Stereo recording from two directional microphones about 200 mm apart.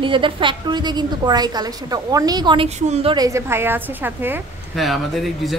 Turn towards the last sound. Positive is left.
turn(degrees=0)  # may be behind; listen again after turning